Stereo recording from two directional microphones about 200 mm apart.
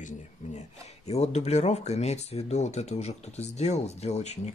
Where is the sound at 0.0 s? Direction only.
35° left (ahead or behind).